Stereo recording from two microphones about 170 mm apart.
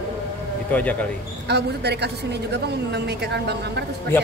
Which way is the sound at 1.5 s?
75° right (ahead or behind).